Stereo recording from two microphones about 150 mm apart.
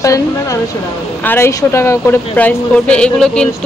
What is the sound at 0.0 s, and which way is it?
Speech, 20° left (ahead or behind).